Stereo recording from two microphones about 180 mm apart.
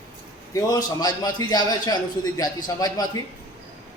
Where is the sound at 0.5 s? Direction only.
20° left (ahead or behind).